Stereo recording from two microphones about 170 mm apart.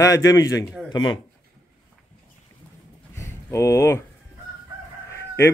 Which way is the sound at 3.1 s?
15° left (ahead or behind).